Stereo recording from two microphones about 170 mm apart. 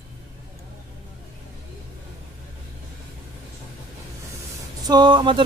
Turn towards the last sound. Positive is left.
turn(degrees=-25)  # may be behind; listen again after turning